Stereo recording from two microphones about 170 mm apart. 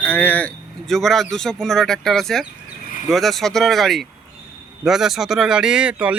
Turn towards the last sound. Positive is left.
turn(degrees=-5)  # may be behind; listen again after turning